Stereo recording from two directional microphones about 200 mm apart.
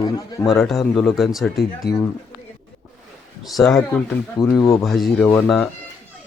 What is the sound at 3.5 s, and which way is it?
Speech, centre (ahead or behind).